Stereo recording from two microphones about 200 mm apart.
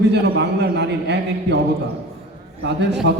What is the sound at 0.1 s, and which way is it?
A man's voice, 55° right (ahead or behind).